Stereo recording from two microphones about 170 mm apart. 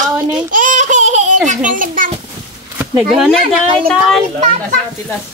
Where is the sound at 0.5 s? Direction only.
50° right (ahead or behind).